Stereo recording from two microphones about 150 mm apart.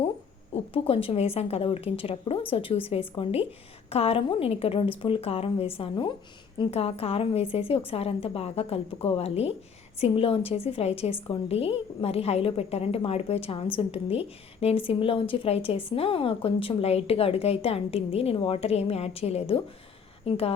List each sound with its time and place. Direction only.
0.5 s a woman's voice: 40° left (ahead or behind)